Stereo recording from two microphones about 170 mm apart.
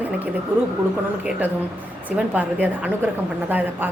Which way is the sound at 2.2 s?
10° right (ahead or behind).